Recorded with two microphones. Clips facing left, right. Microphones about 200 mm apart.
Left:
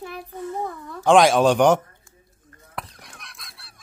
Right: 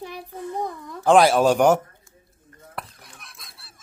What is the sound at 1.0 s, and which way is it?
Speech, 5° right (ahead or behind).